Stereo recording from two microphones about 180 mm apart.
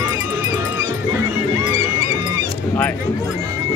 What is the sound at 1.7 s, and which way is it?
Music, 20° right (ahead or behind).